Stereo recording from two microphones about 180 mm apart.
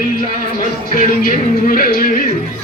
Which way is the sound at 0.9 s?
50° left (ahead or behind).